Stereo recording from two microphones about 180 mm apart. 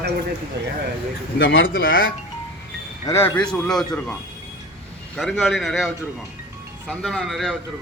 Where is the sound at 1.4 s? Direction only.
80° left.